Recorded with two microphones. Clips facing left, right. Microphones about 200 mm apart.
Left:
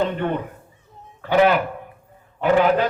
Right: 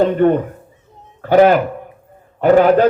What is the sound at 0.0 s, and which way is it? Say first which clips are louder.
A man's voice: right 10 dB; 45° right (ahead or behind).